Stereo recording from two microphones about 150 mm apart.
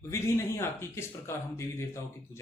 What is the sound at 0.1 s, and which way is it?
Speech, 15° left (ahead or behind).